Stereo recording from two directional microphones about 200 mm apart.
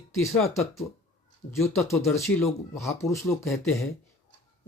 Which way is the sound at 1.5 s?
15° left (ahead or behind).